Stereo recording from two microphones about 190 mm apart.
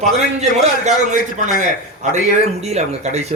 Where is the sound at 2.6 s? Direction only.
35° right (ahead or behind).